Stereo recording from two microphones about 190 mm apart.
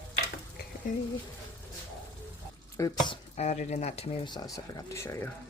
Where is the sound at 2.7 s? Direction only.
20° left (ahead or behind).